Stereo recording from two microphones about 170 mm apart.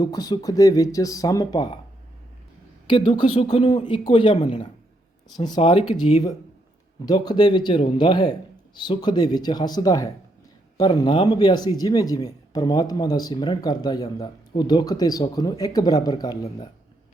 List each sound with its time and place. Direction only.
0.0 s speech: 20° left (ahead or behind)
2.8 s speech: 25° left (ahead or behind)
5.4 s speech: 25° left (ahead or behind)
7.0 s speech: 25° left (ahead or behind)